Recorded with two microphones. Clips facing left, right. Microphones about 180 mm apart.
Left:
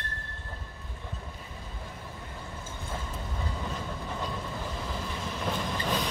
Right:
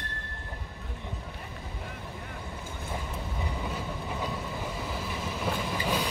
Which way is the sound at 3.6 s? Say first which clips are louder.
Right 1 dB; 10° right (ahead or behind).